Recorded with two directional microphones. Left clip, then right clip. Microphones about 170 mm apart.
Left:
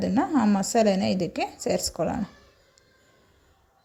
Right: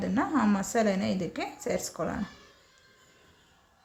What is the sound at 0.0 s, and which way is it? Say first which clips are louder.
A woman's voice: left 4 dB; 30° left (ahead or behind).